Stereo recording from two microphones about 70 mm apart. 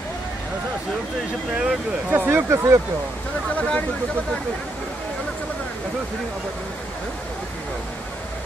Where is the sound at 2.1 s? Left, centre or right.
Right.